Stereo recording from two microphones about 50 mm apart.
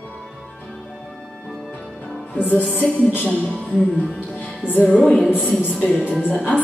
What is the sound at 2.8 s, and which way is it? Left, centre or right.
Speech, left.